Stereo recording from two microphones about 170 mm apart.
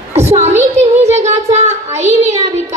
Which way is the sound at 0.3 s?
40° right (ahead or behind).